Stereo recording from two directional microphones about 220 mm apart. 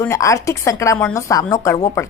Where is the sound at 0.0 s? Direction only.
15° left (ahead or behind).